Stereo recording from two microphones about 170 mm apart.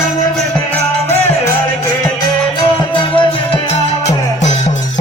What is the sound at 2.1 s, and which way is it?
Music, 30° left (ahead or behind).